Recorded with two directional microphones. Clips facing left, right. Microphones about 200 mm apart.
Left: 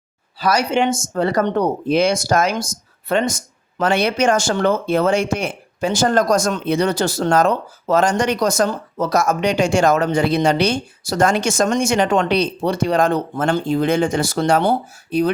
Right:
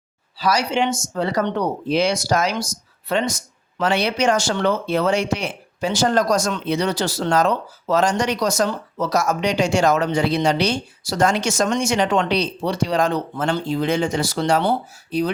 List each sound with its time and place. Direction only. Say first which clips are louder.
0.3 s speech: left 2 dB; 50° left (ahead or behind)